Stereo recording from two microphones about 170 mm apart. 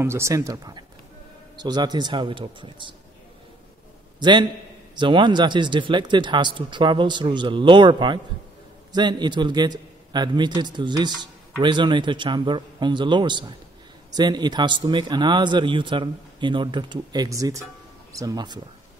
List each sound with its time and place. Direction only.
0.0 s a man's voice: 15° right (ahead or behind)
4.2 s a man's voice: 25° right (ahead or behind)